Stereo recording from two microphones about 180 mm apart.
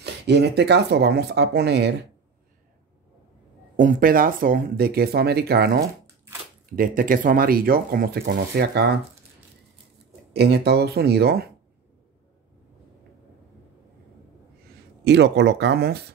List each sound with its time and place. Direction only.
0.0 s speech: 70° right (ahead or behind)
3.7 s speech: 50° right (ahead or behind); by 8.9 s 65° right (ahead or behind)
10.3 s speech: 65° right (ahead or behind)
15.0 s speech: 70° right (ahead or behind)